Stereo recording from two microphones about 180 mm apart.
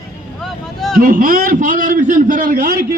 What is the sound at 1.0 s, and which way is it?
A man's voice, 50° right (ahead or behind).